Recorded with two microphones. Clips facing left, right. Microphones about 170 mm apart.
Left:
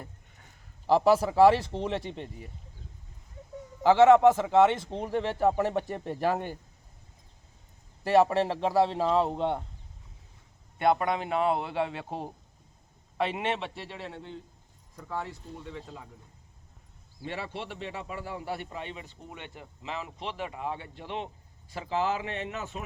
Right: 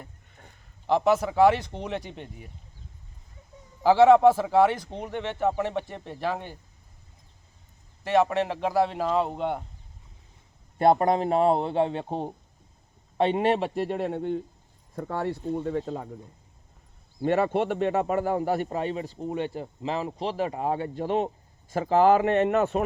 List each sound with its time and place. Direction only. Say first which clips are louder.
0.9 s speech: even; 35° left (ahead or behind)
3.8 s a man's voice: right 2 dB; 10° right (ahead or behind)
5.1 s speech: left 1 dB; 35° left (ahead or behind)
8.0 s speech: even; 35° left (ahead or behind)
9.0 s speech: even; centre (ahead or behind)
10.8 s a man's voice: right 5 dB; 35° right (ahead or behind); by 16.1 s 55° right (ahead or behind)
17.2 s speech: right 13 dB; 50° right (ahead or behind)